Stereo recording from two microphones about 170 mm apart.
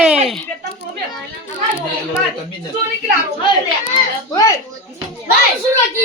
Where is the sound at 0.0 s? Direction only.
5° right (ahead or behind).